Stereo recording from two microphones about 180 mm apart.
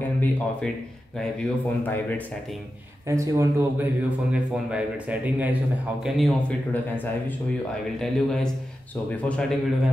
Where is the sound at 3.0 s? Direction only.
15° right (ahead or behind); by 9.5 s 5° left (ahead or behind).